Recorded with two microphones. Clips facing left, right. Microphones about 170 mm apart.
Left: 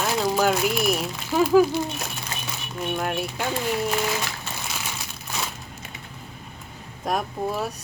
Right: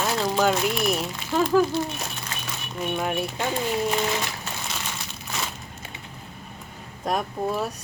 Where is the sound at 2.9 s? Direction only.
Centre (ahead or behind).